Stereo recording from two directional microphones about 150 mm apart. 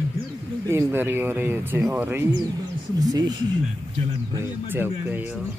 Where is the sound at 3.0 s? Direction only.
25° right (ahead or behind).